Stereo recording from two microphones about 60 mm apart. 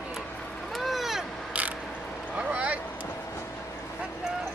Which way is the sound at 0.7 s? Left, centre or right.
Centre.